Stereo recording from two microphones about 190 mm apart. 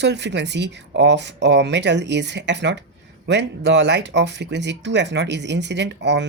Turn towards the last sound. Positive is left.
turn(degrees=-65)  # may be behind; listen again after turning